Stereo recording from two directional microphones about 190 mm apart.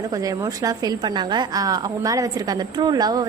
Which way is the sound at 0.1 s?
20° right (ahead or behind).